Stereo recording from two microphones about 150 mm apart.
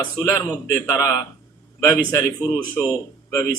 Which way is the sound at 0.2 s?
15° left (ahead or behind).